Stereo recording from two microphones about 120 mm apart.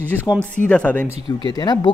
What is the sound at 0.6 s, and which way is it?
Speech, 10° left (ahead or behind).